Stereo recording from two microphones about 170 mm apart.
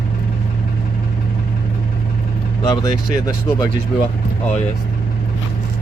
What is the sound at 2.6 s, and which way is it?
Speech, 25° left (ahead or behind).